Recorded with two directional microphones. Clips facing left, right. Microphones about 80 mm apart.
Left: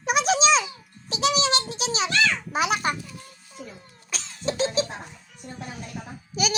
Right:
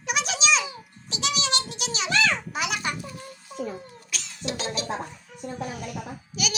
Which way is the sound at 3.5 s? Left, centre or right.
Right.